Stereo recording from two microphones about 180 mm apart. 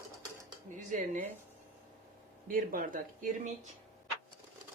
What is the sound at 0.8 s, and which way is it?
Speech, 45° right (ahead or behind).